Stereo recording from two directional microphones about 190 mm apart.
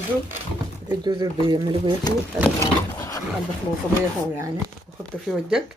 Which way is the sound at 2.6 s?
15° left (ahead or behind).